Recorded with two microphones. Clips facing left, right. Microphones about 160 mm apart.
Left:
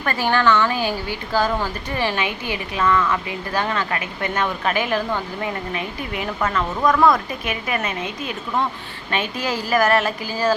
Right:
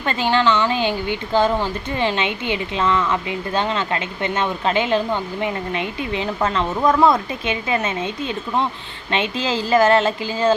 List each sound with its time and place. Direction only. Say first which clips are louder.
0.0 s a woman's voice: right 1 dB; 20° right (ahead or behind)